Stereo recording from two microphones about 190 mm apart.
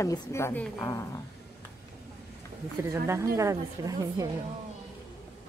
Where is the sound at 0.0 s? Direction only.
15° left (ahead or behind).